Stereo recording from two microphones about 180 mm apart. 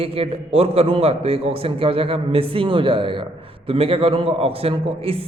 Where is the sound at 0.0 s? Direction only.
30° right (ahead or behind).